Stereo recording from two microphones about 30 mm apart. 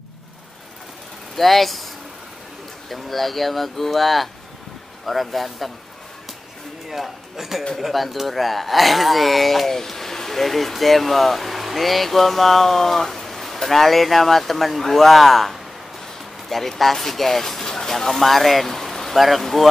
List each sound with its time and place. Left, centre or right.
1.3 s speech: centre
2.9 s speech: centre
6.9 s speech: centre